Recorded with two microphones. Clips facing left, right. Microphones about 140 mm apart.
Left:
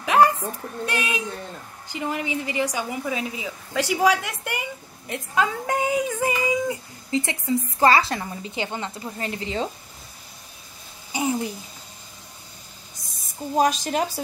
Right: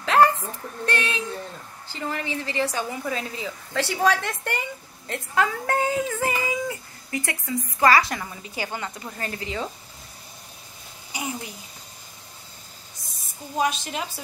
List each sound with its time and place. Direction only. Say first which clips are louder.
0.0 s a woman's voice: left 1 dB; 10° left (ahead or behind)
13.6 s speech: left 5 dB; 40° left (ahead or behind)